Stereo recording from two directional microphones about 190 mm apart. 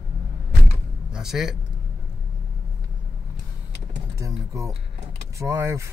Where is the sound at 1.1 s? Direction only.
5° right (ahead or behind).